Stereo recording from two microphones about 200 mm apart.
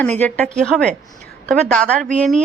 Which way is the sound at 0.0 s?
10° left (ahead or behind).